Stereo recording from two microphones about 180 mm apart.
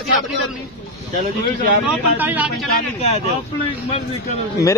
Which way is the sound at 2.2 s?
10° right (ahead or behind).